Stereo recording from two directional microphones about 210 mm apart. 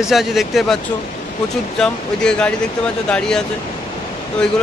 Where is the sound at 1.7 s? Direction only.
5° left (ahead or behind).